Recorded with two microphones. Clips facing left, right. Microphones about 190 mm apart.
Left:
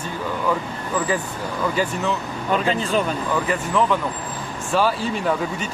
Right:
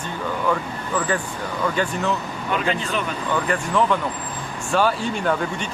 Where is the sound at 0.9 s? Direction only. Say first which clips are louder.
Left 1 dB; 5° left (ahead or behind).